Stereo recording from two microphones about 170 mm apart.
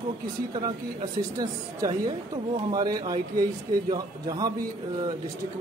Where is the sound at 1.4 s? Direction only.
20° right (ahead or behind).